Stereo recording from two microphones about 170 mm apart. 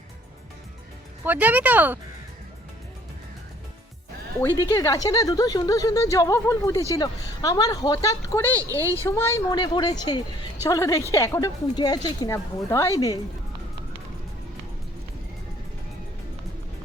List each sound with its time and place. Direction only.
1.2 s speech: 10° right (ahead or behind)
4.4 s a woman's voice: 15° left (ahead or behind)
9.5 s speech: 25° left (ahead or behind)